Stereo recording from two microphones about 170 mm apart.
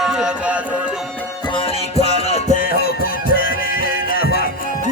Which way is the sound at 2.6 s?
55° left (ahead or behind).